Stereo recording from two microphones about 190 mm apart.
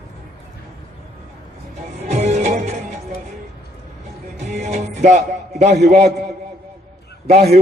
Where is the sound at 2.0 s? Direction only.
35° right (ahead or behind).